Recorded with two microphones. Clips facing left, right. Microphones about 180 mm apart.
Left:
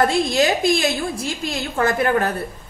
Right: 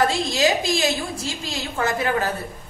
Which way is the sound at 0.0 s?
55° left (ahead or behind).